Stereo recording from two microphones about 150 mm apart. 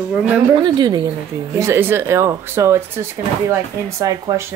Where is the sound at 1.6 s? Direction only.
15° right (ahead or behind).